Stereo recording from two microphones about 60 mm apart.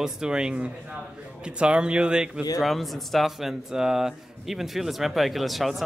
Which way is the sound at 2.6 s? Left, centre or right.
Centre.